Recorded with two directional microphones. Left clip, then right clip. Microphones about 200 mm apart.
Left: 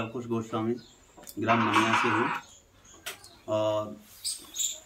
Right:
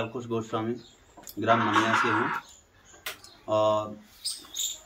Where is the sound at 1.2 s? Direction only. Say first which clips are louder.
Right 2 dB; 15° left (ahead or behind).